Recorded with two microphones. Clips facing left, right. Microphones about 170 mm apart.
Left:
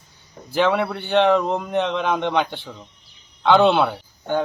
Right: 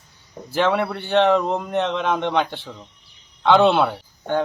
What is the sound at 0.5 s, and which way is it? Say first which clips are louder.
Speech: left 1 dB; centre (ahead or behind).